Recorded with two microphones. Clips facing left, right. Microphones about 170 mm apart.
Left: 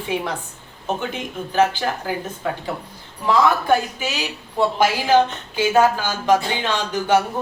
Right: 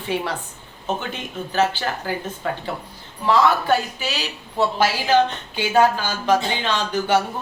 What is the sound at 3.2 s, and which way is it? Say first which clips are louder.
Speech: even; 15° left (ahead or behind).